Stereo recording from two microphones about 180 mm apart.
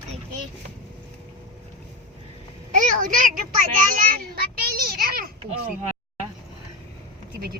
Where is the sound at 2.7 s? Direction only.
45° right (ahead or behind).